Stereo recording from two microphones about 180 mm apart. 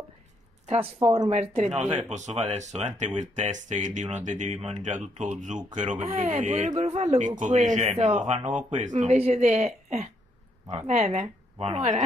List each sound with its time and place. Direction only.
1.0 s speech: 15° right (ahead or behind)
1.3 s speech: 35° right (ahead or behind)